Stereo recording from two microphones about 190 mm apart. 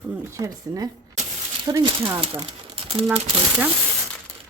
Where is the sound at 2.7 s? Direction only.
30° right (ahead or behind).